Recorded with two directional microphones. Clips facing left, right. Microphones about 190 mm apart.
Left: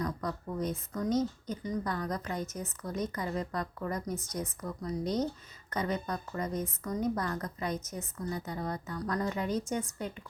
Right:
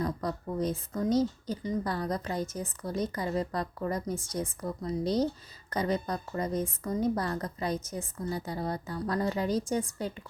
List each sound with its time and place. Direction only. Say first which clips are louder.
0.0 s speech: right 3 dB; 30° right (ahead or behind)